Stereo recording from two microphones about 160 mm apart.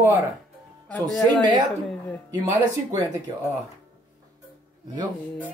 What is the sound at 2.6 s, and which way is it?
Speech, 25° right (ahead or behind).